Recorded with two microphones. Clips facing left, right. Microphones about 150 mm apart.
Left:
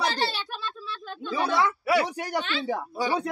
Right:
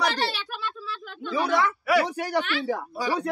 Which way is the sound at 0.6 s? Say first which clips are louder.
Right 2 dB; 30° left (ahead or behind).